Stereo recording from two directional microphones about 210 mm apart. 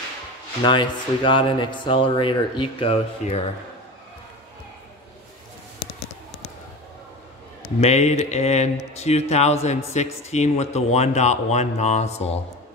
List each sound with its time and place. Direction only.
0.7 s speech: 20° left (ahead or behind)
7.8 s speech: 30° left (ahead or behind)